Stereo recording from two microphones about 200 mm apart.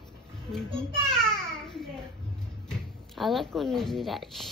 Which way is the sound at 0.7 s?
5° left (ahead or behind).